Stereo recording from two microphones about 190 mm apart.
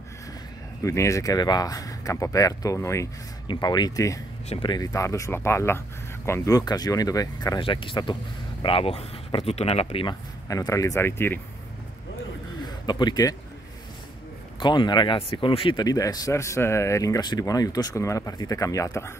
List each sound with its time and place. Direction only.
0.8 s speech: 15° left (ahead or behind)
10.5 s speech: 15° left (ahead or behind)
12.6 s speech: 20° left (ahead or behind)
14.6 s speech: 25° left (ahead or behind)